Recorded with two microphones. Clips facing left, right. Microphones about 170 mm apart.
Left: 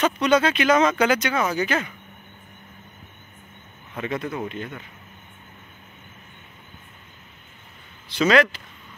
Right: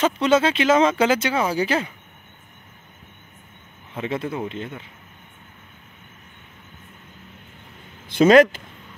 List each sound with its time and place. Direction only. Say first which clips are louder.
0.0 s speech: right 1 dB; 25° right (ahead or behind)
3.9 s speech: right 2 dB; 25° right (ahead or behind)
8.1 s speech: right 6 dB; 50° right (ahead or behind)